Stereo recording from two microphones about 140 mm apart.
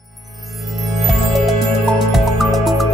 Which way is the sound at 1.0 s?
Centre (ahead or behind).